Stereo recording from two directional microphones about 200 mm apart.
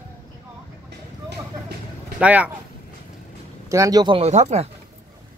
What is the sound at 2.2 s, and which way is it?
Speech, 5° right (ahead or behind).